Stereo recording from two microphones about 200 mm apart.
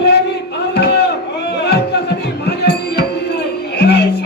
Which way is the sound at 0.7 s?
55° left (ahead or behind).